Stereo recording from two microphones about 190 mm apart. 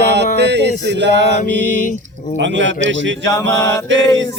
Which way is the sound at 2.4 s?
75° right (ahead or behind).